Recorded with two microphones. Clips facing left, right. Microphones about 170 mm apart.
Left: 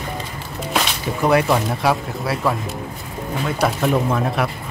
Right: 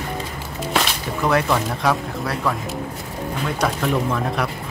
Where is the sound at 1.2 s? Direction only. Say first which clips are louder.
Left 3 dB; 15° left (ahead or behind).